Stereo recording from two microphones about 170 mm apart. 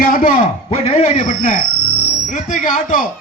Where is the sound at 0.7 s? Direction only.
40° left (ahead or behind).